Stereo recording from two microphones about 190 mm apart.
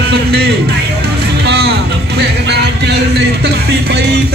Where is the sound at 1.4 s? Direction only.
60° right (ahead or behind).